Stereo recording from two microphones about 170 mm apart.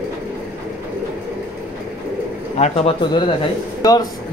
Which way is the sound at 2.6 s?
30° left (ahead or behind).